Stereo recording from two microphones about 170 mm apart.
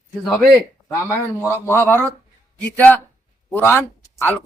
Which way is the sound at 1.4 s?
15° left (ahead or behind).